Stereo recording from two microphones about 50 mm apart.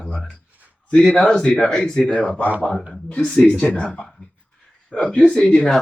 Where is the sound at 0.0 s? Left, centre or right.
Left.